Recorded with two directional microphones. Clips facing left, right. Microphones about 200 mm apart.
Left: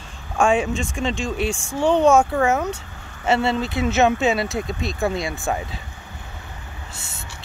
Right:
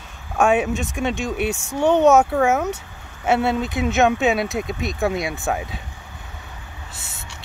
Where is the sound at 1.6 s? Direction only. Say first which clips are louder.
Right 1 dB; 20° right (ahead or behind).